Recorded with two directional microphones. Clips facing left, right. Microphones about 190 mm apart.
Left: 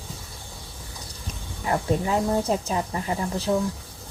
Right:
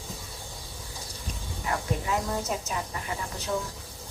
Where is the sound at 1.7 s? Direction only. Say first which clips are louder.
Left 6 dB; 30° left (ahead or behind).